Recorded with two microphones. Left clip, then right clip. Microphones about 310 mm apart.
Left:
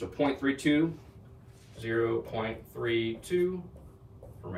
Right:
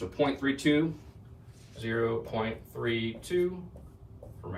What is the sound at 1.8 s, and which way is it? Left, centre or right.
Speech, centre.